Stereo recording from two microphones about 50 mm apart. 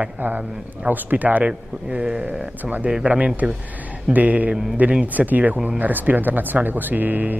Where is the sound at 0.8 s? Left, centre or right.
Right.